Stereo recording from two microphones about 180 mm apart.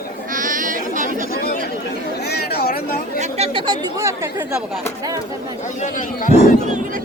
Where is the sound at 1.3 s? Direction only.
55° left (ahead or behind).